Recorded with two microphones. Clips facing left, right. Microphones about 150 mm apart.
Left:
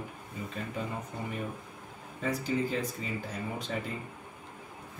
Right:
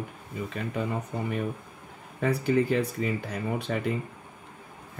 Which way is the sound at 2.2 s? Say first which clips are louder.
Right 6 dB; 65° right (ahead or behind).